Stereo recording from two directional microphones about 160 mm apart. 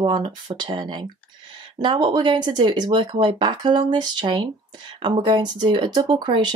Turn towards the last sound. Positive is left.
turn(degrees=-30)  # may be behind; listen again after turning